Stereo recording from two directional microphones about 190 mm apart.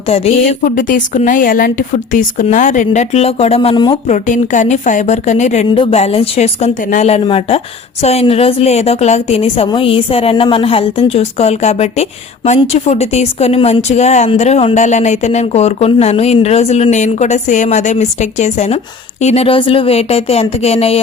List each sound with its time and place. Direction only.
0.6 s a woman's voice: 45° left (ahead or behind); by 3.9 s 25° left (ahead or behind)
4.1 s speech: 40° left (ahead or behind)